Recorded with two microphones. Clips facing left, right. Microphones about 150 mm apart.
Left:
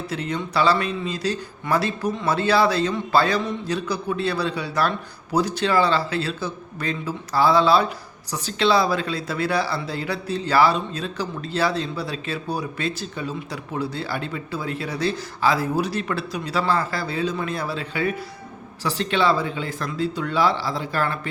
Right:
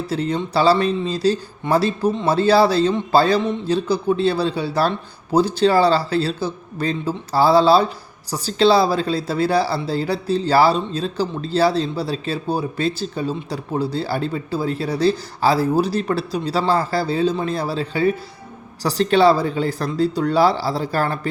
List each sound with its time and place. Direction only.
0.1 s speech: 30° right (ahead or behind)